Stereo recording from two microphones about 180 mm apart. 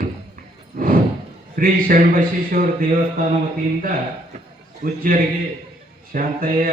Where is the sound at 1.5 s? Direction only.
50° right (ahead or behind).